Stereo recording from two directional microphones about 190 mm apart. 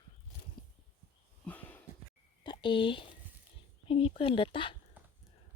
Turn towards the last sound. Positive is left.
turn(degrees=25)  # may be behind; listen again after turning